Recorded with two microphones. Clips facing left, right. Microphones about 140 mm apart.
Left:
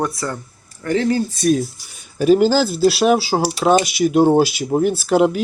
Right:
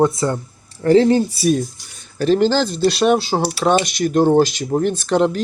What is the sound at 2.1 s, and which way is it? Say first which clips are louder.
Speech: left 2 dB; 10° left (ahead or behind).